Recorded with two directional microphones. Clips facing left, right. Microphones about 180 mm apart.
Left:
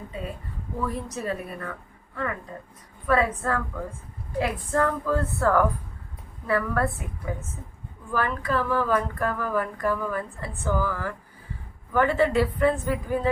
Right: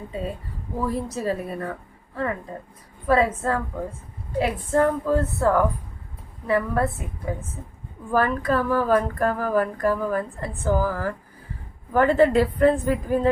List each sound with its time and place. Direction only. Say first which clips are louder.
0.8 s speech: right 4 dB; 30° right (ahead or behind)
3.1 s a woman's voice: right 3 dB; 30° right (ahead or behind)
8.1 s speech: right 5 dB; 45° right (ahead or behind)